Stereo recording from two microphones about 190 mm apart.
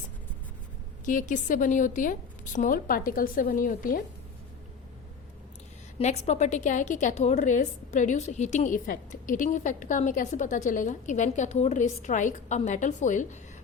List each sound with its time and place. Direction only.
1.0 s a woman's voice: 45° left (ahead or behind)
6.0 s a woman's voice: 35° left (ahead or behind)